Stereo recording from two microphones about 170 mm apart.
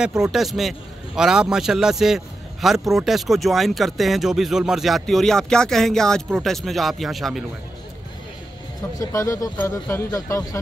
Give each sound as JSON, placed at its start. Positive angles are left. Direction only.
{"t": 0.0, "sound": "a man's voice", "side_deg": -5}
{"t": 9.0, "sound": "speech", "side_deg": 20}